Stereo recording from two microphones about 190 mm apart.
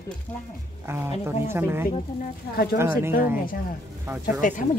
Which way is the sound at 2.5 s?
55° left (ahead or behind).